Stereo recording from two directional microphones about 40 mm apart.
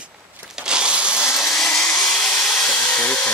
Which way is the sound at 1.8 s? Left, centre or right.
Left.